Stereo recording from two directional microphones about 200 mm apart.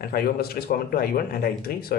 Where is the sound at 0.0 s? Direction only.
50° left (ahead or behind).